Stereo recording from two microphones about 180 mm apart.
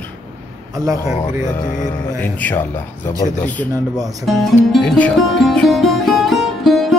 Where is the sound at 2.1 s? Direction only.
10° left (ahead or behind).